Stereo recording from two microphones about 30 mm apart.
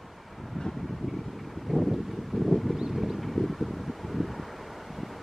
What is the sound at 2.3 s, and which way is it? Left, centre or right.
Wind, centre.